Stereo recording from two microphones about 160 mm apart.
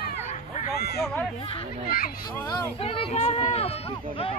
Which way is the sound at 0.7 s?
80° left.